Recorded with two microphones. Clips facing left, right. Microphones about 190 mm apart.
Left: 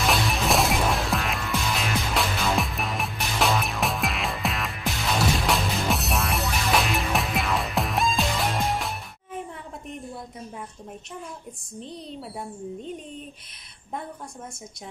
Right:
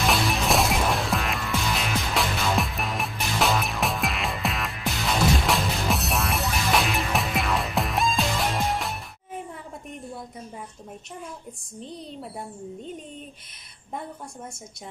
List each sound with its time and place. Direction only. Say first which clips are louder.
0.0 s music: even; centre (ahead or behind)